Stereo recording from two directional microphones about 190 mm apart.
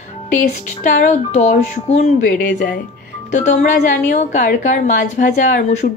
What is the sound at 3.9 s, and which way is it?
A woman's voice, 40° left (ahead or behind).